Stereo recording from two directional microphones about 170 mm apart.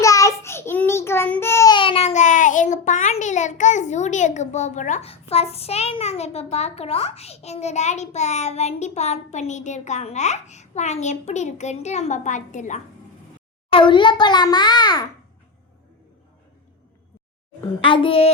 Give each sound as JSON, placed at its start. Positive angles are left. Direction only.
{"t": 0.0, "sound": "child singing", "side_deg": 20}
{"t": 1.7, "sound": "a child's voice", "side_deg": 30}
{"t": 13.7, "sound": "a child's voice", "side_deg": 30}
{"t": 17.7, "sound": "a child's voice", "side_deg": 30}